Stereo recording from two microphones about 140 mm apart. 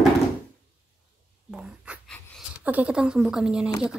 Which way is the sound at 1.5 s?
5° right (ahead or behind).